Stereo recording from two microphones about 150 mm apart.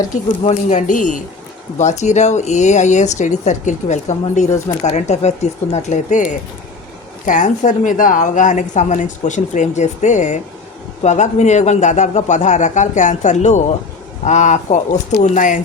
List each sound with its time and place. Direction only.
0.4 s a woman's voice: 55° left (ahead or behind)
7.3 s a woman's voice: 55° left (ahead or behind)